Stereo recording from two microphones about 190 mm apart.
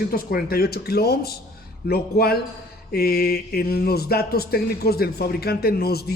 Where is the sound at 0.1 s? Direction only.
50° left (ahead or behind).